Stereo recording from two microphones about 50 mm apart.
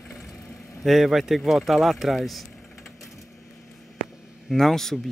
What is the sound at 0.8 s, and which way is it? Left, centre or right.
Speech, centre.